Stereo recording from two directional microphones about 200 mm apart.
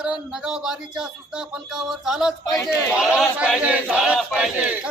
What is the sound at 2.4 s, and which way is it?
Speech, 15° left (ahead or behind).